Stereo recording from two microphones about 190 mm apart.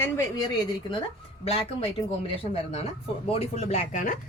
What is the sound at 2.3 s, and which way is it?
Speech, 30° left (ahead or behind).